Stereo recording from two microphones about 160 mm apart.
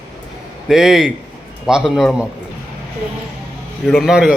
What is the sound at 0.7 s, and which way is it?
A man's voice, 5° right (ahead or behind).